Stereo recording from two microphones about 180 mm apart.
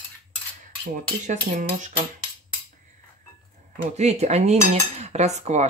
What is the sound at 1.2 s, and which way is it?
Speech, 45° right (ahead or behind).